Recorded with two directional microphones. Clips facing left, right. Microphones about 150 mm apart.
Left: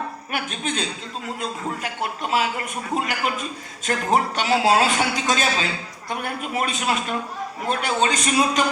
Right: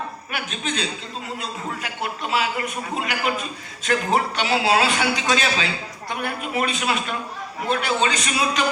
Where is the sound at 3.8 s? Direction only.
45° left (ahead or behind).